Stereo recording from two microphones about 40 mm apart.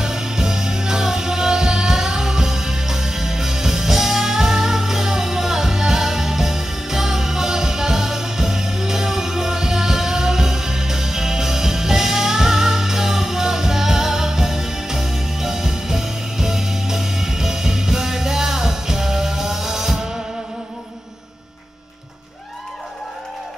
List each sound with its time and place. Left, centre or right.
0.0 s music: centre